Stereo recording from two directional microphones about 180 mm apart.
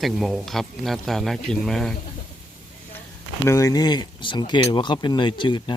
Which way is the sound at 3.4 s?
15° left (ahead or behind).